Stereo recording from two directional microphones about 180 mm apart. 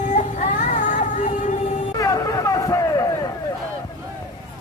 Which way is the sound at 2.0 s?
20° left (ahead or behind).